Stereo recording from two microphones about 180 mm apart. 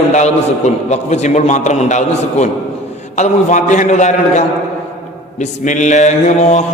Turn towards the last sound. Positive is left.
turn(degrees=40)  # may be behind; listen again after turning